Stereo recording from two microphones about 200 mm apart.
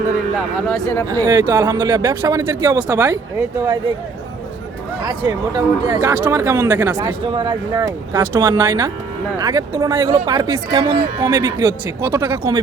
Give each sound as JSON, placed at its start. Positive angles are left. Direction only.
{"t": 0.3, "sound": "speech", "side_deg": 5}
{"t": 1.1, "sound": "speech", "side_deg": -20}
{"t": 5.5, "sound": "speech", "side_deg": -15}